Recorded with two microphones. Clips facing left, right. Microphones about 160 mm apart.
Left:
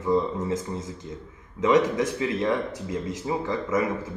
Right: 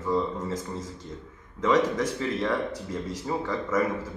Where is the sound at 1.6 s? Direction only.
10° left (ahead or behind).